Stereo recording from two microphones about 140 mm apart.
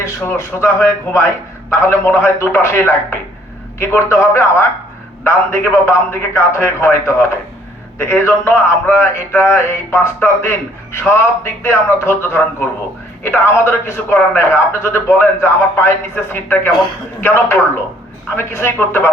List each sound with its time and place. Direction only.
0.0 s a man's voice: 20° left (ahead or behind)